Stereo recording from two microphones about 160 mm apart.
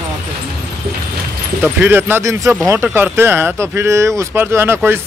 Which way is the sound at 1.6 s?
15° right (ahead or behind).